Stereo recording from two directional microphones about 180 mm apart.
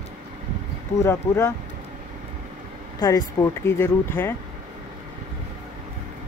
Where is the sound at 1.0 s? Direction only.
15° left (ahead or behind).